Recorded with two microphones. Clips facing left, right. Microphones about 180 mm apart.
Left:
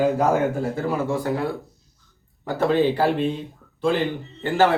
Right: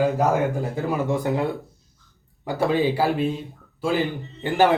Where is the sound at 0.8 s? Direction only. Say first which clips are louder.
Right 2 dB; 20° right (ahead or behind).